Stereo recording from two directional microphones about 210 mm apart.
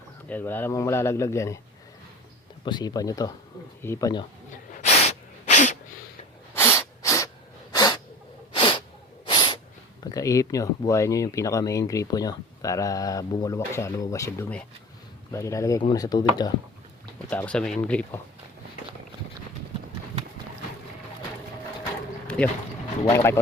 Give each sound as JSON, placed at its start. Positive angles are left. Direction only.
{"t": 0.3, "sound": "speech", "side_deg": 10}
{"t": 2.6, "sound": "speech", "side_deg": 20}
{"t": 4.7, "sound": "sneeze", "side_deg": 35}
{"t": 6.5, "sound": "sneeze", "side_deg": 10}
{"t": 10.0, "sound": "speech", "side_deg": 15}
{"t": 17.2, "sound": "speech", "side_deg": 5}
{"t": 22.4, "sound": "speech", "side_deg": 5}